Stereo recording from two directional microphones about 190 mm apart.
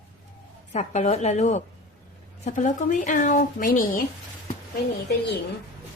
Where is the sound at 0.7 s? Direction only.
35° left (ahead or behind).